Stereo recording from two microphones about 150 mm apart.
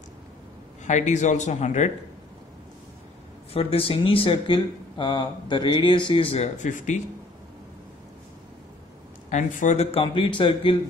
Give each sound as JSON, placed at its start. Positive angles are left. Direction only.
{"t": 0.8, "sound": "speech", "side_deg": 50}
{"t": 3.5, "sound": "speech", "side_deg": 40}
{"t": 9.3, "sound": "speech", "side_deg": 55}